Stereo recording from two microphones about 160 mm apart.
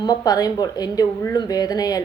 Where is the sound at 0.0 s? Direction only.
25° left (ahead or behind).